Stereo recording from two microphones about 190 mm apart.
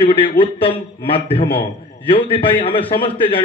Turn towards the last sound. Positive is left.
turn(degrees=30)  # may be behind; listen again after turning